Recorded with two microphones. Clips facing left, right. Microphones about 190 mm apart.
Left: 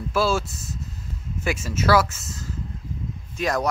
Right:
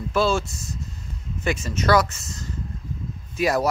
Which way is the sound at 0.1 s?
5° left (ahead or behind).